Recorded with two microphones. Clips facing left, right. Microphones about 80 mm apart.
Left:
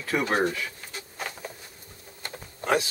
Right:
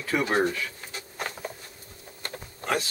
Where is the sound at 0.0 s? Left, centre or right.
Centre.